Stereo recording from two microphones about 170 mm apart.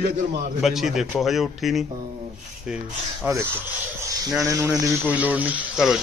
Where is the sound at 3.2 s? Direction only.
10° right (ahead or behind).